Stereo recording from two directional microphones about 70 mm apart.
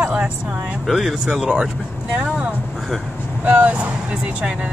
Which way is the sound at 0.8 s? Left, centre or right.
Centre.